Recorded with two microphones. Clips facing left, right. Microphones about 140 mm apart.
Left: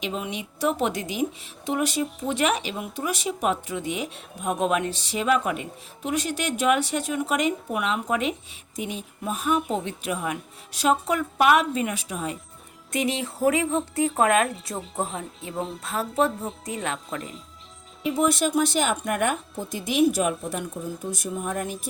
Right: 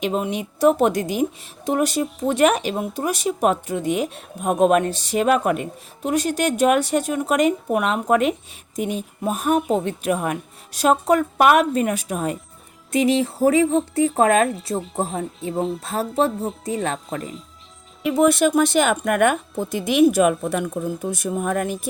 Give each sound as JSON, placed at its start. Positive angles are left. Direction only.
{"t": 0.0, "sound": "speech", "side_deg": -45}
{"t": 12.9, "sound": "a woman's voice", "side_deg": -35}
{"t": 18.0, "sound": "speech", "side_deg": -65}